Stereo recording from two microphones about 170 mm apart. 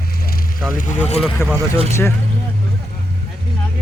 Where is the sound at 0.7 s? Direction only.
50° left (ahead or behind).